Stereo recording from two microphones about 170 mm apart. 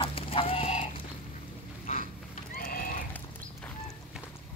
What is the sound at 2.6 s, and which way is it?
Horse, 55° left (ahead or behind).